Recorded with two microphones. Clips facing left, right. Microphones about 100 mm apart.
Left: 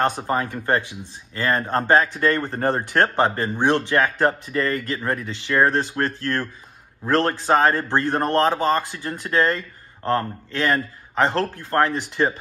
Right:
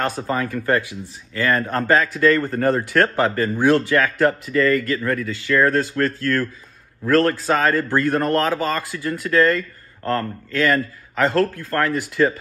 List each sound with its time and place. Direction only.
0.0 s speech: 20° left (ahead or behind)